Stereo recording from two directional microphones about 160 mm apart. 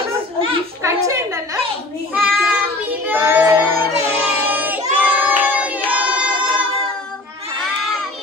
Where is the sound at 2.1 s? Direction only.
10° right (ahead or behind).